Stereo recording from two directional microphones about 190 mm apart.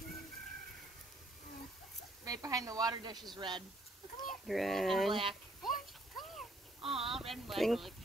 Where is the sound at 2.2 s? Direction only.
20° right (ahead or behind).